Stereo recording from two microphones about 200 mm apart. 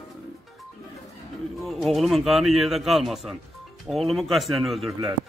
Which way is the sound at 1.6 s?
Centre (ahead or behind).